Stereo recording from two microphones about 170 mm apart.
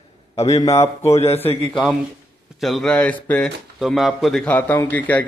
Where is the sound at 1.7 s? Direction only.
Centre (ahead or behind).